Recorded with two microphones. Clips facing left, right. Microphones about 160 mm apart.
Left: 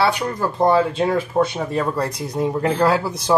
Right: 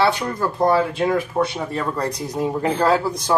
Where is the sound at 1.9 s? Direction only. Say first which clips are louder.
Left 1 dB; centre (ahead or behind).